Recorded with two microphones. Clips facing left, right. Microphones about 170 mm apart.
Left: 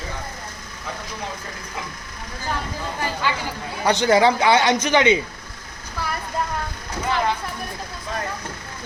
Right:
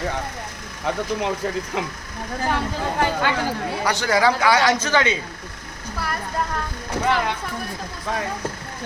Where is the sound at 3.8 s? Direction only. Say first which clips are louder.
Left 4 dB; 20° left (ahead or behind).